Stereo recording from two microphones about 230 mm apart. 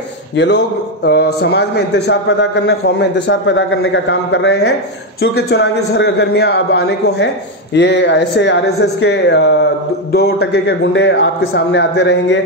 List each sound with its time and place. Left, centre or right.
0.4 s a man's voice: left